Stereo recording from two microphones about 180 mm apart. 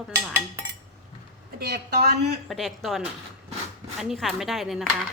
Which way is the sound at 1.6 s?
60° right (ahead or behind).